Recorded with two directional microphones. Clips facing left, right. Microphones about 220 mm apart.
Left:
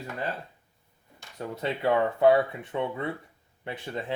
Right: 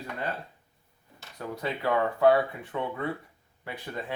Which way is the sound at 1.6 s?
25° left (ahead or behind).